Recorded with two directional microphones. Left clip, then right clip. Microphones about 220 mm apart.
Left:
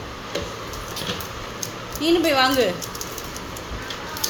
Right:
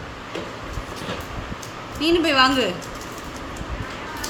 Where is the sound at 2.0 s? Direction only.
10° right (ahead or behind).